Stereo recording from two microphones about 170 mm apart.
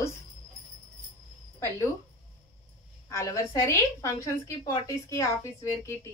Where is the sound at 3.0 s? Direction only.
20° left (ahead or behind).